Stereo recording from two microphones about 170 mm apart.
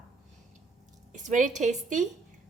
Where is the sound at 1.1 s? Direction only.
45° right (ahead or behind).